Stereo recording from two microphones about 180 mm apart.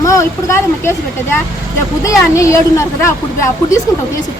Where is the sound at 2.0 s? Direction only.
15° left (ahead or behind).